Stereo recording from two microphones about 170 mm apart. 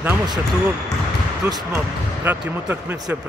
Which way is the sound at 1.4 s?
15° right (ahead or behind).